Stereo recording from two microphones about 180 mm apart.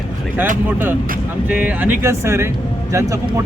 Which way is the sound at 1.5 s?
10° right (ahead or behind).